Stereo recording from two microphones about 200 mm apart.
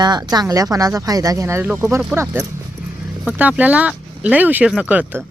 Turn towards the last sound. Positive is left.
turn(degrees=-10)  # may be behind; listen again after turning